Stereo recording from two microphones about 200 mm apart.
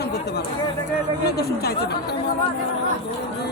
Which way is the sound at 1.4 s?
55° left (ahead or behind).